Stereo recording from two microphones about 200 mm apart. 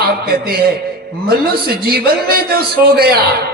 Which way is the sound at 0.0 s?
50° right (ahead or behind).